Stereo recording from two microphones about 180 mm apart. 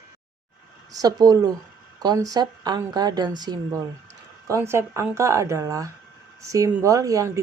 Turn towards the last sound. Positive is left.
turn(degrees=-20)  # may be behind; listen again after turning